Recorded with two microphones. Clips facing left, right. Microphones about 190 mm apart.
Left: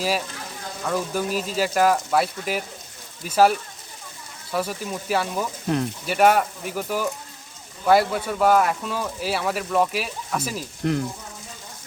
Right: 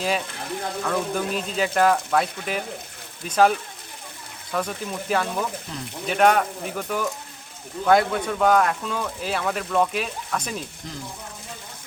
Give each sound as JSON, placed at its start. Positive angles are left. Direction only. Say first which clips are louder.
{"t": 0.9, "sound": "speech", "louder": "left 2 dB", "side_deg": 5}
{"t": 4.5, "sound": "speech", "louder": "left 1 dB", "side_deg": 5}
{"t": 5.6, "sound": "speech", "louder": "left 12 dB", "side_deg": 60}
{"t": 6.1, "sound": "speech", "louder": "even", "side_deg": 5}
{"t": 10.8, "sound": "speech", "louder": "left 14 dB", "side_deg": 65}